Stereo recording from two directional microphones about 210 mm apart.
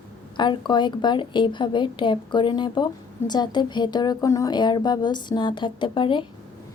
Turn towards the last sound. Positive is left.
turn(degrees=25)  # may be behind; listen again after turning